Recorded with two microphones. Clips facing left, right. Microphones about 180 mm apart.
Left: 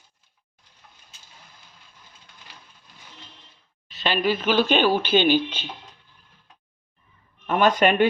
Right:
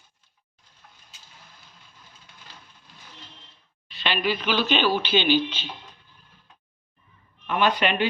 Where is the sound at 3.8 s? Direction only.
40° left (ahead or behind).